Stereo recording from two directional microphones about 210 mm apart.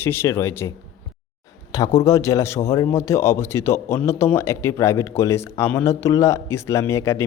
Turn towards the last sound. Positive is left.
turn(degrees=15)  # may be behind; listen again after turning